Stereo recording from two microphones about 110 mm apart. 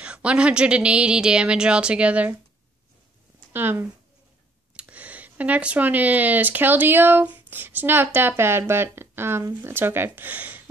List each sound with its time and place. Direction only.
0.0 s speech: 10° right (ahead or behind)
3.5 s speech: 20° right (ahead or behind)